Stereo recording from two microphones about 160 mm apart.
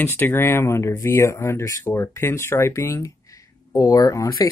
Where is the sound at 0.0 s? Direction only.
15° left (ahead or behind).